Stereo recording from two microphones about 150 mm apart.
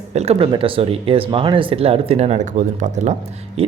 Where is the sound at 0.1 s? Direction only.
45° right (ahead or behind).